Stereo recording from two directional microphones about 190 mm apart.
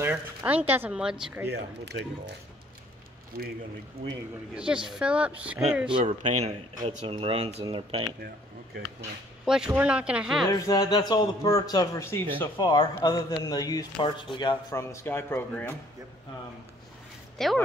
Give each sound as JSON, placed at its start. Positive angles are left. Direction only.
{"t": 0.0, "sound": "speech", "side_deg": -10}
{"t": 1.5, "sound": "speech", "side_deg": -65}
{"t": 4.8, "sound": "speech", "side_deg": -5}
{"t": 5.9, "sound": "speech", "side_deg": -35}
{"t": 9.5, "sound": "speech", "side_deg": -5}
{"t": 10.5, "sound": "a man's voice", "side_deg": 20}
{"t": 17.4, "sound": "speech", "side_deg": 0}